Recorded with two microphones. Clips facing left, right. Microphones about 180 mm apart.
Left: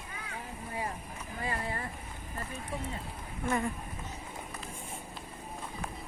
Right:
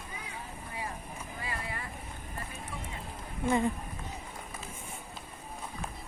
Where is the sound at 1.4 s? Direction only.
40° left (ahead or behind).